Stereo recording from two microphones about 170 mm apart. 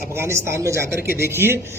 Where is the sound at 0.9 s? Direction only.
65° left (ahead or behind).